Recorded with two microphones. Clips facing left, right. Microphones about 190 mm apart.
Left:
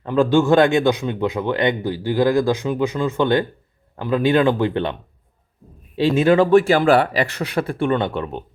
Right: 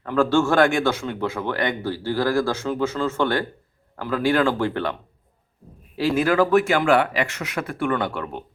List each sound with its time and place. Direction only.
0.0 s speech: 20° left (ahead or behind)
6.0 s speech: 25° left (ahead or behind)